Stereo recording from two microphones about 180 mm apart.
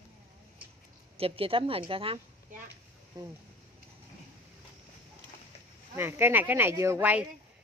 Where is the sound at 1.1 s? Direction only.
30° right (ahead or behind).